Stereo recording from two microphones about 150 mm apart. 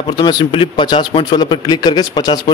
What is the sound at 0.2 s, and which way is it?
A man's voice, 30° left (ahead or behind).